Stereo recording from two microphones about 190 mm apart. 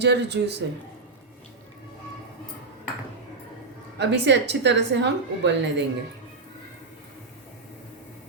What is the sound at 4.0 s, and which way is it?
A woman's voice, 65° right (ahead or behind).